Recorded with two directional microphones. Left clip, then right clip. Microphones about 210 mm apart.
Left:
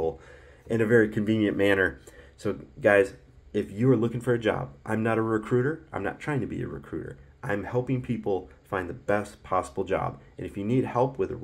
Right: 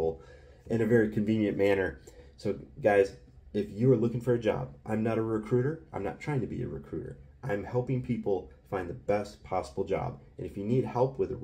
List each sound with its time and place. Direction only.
0.7 s speech: 5° left (ahead or behind)
8.2 s speech: 15° left (ahead or behind)
8.7 s speech: centre (ahead or behind)